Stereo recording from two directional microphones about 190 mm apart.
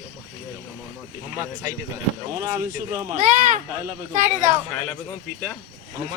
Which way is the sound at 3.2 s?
40° right (ahead or behind).